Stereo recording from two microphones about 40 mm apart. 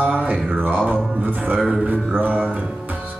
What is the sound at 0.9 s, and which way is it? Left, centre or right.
Speech, right.